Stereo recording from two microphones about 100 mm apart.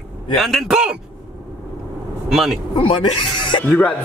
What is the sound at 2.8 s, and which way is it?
Speech, 55° left (ahead or behind).